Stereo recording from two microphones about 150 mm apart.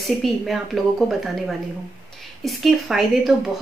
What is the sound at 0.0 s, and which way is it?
Speech, centre (ahead or behind).